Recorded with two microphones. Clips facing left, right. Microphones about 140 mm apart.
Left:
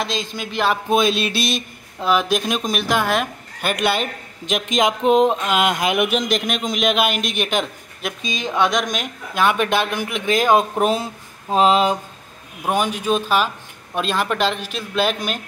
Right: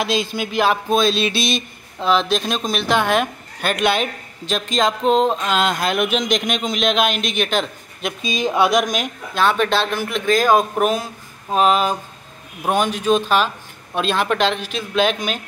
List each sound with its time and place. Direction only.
0.0 s a man's voice: 5° right (ahead or behind)
0.8 s speech: 15° left (ahead or behind)
4.5 s speech: 15° left (ahead or behind)
8.2 s speech: 10° right (ahead or behind)
9.3 s speech: 10° left (ahead or behind)
12.7 s a man's voice: 10° left (ahead or behind)